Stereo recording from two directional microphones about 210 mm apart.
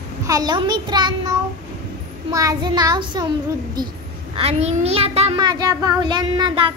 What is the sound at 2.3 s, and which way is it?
A child's voice, 20° right (ahead or behind).